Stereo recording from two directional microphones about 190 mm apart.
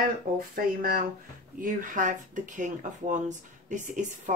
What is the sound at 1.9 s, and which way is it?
A woman's voice, 45° right (ahead or behind).